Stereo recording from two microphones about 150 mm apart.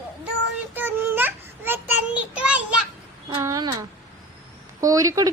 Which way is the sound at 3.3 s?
25° right (ahead or behind).